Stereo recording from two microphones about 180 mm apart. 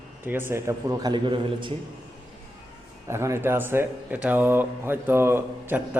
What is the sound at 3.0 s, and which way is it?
Speech, 15° right (ahead or behind).